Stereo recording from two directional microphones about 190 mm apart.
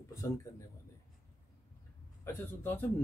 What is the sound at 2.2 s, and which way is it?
Speech, 10° left (ahead or behind).